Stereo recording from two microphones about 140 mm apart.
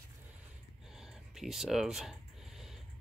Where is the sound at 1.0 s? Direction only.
5° right (ahead or behind).